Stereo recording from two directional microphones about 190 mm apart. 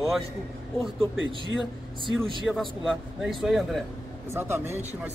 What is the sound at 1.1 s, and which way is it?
Speech, 85° right.